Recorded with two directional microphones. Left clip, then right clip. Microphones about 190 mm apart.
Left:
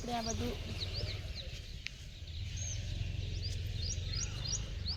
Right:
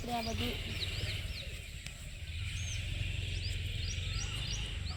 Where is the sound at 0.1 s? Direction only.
Centre (ahead or behind).